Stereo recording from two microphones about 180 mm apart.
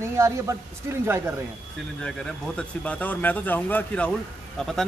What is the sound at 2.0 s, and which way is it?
Speech, 5° left (ahead or behind).